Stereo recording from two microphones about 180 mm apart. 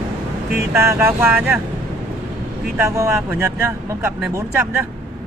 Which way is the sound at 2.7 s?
15° right (ahead or behind).